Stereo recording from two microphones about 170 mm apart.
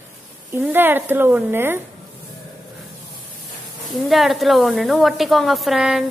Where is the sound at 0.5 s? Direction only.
15° right (ahead or behind).